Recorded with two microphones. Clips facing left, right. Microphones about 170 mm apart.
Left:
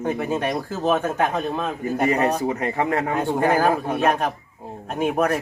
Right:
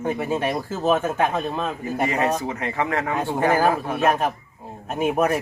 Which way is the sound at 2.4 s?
35° left (ahead or behind).